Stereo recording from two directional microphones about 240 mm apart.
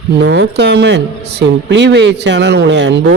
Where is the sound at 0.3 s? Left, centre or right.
Right.